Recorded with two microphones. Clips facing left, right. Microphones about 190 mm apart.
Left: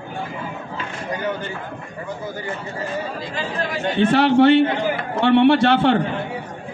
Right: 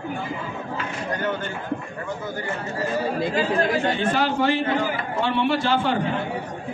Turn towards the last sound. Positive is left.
turn(degrees=70)  # may be behind; listen again after turning